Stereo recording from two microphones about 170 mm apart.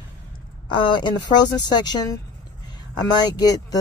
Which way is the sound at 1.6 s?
25° left (ahead or behind).